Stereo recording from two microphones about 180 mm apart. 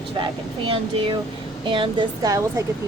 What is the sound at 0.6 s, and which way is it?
Speech, 30° right (ahead or behind).